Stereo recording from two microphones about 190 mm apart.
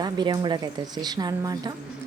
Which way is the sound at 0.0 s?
25° right (ahead or behind).